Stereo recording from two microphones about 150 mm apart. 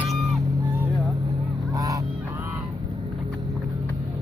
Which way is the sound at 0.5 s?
30° right (ahead or behind).